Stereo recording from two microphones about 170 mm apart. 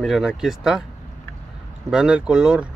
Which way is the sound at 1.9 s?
5° right (ahead or behind).